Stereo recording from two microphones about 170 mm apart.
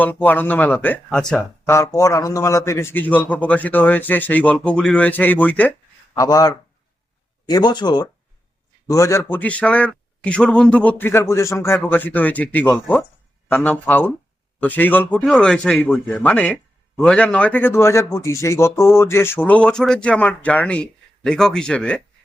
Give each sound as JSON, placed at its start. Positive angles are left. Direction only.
{"t": 0.0, "sound": "a man's voice", "side_deg": 10}
{"t": 6.1, "sound": "a man's voice", "side_deg": 20}